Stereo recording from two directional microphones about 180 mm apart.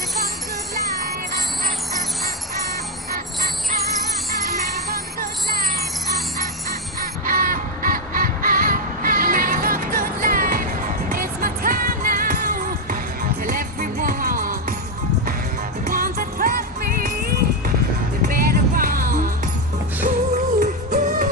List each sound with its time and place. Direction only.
7.0 s music: 50° right (ahead or behind)
15.9 s music: 55° right (ahead or behind)
18.3 s music: 55° right (ahead or behind)